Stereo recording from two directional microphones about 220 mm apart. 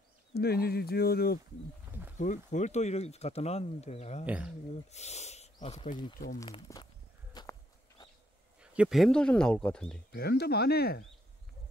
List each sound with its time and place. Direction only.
0.3 s speech: 45° left (ahead or behind)
1.9 s snake: 10° right (ahead or behind)
2.1 s speech: 35° left (ahead or behind)
6.1 s speech: 40° left (ahead or behind)
6.4 s speech: 20° left (ahead or behind)
7.4 s walk: 20° left (ahead or behind)
8.5 s speech: 5° right (ahead or behind)
10.1 s speech: 45° left (ahead or behind)